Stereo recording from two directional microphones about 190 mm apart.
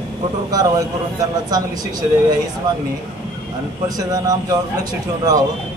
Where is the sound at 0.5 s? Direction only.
20° right (ahead or behind).